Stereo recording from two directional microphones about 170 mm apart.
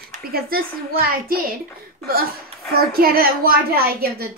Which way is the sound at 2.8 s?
60° right (ahead or behind).